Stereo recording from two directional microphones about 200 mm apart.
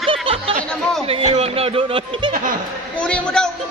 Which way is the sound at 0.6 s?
5° left (ahead or behind).